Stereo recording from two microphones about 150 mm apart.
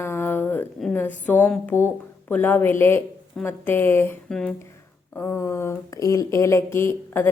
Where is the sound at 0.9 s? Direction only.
10° left (ahead or behind).